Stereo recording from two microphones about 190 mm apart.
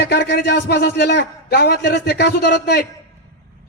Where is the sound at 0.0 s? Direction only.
60° left (ahead or behind).